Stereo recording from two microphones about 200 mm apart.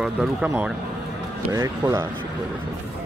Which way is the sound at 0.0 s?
Centre (ahead or behind).